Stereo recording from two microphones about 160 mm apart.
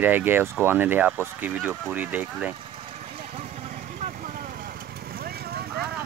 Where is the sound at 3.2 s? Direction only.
50° right (ahead or behind); by 5.8 s 75° right (ahead or behind).